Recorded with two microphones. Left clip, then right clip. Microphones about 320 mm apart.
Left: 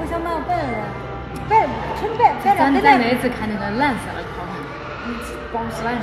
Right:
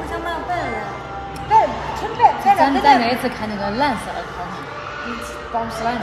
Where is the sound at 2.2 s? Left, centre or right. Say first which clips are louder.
Right 2 dB; right.